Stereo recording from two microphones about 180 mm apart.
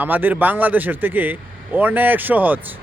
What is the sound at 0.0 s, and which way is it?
A man's voice, 10° right (ahead or behind).